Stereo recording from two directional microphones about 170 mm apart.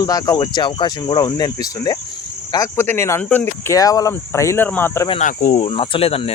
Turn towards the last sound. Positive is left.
turn(degrees=35)  # may be behind; listen again after turning